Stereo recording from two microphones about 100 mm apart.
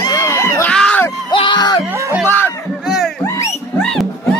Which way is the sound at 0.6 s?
10° left (ahead or behind).